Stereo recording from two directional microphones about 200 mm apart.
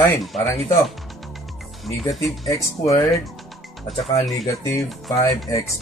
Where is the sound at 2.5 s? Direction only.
15° left (ahead or behind).